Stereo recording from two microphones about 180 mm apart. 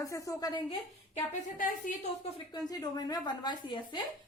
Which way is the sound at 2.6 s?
20° left (ahead or behind).